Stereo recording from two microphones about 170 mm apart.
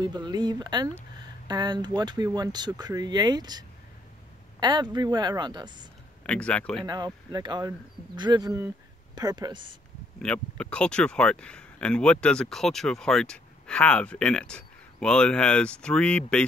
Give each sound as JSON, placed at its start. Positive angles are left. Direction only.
{"t": 0.0, "sound": "speech", "side_deg": -25}
{"t": 6.2, "sound": "speech", "side_deg": 5}
{"t": 7.3, "sound": "speech", "side_deg": -25}
{"t": 10.1, "sound": "speech", "side_deg": 5}